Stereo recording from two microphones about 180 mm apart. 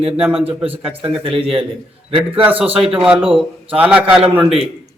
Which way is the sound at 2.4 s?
10° right (ahead or behind).